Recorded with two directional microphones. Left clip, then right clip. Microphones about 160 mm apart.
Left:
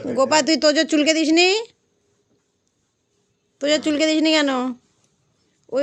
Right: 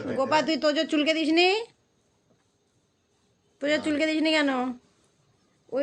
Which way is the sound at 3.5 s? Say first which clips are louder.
Left 6 dB; 45° left (ahead or behind).